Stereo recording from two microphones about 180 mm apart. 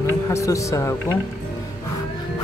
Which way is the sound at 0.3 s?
15° left (ahead or behind).